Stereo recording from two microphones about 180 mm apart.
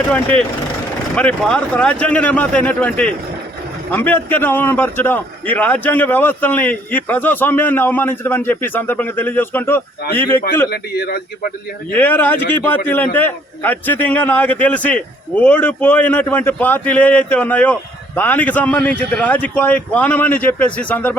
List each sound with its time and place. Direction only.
0.1 s a man's voice: 10° left (ahead or behind)
10.7 s a man's voice: 55° left (ahead or behind)
11.9 s a man's voice: 10° left (ahead or behind)